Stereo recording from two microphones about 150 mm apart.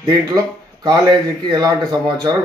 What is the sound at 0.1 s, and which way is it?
Speech, 25° right (ahead or behind).